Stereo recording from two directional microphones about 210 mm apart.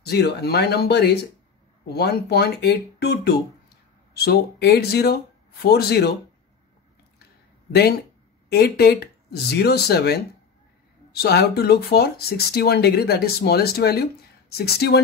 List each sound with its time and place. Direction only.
0.0 s speech: 50° left (ahead or behind)
8.5 s speech: 50° left (ahead or behind)